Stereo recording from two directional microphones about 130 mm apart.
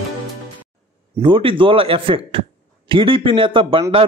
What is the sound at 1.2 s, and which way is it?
A man's voice, 40° right (ahead or behind).